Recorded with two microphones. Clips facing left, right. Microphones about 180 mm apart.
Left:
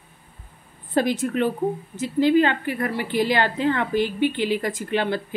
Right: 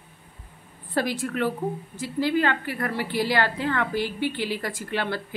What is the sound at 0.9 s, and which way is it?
A woman's voice, 20° left (ahead or behind).